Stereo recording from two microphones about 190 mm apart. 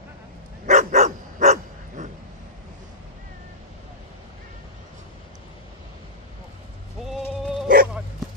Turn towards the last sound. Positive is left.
turn(degrees=-45)  # may be behind; listen again after turning